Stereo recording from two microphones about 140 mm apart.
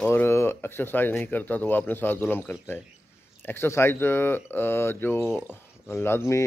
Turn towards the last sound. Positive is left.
turn(degrees=20)  # may be behind; listen again after turning